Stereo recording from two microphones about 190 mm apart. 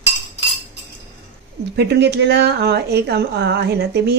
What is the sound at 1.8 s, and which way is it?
Speech, 60° right (ahead or behind).